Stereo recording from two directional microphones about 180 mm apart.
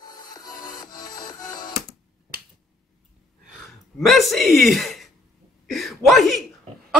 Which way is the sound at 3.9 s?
Centre (ahead or behind).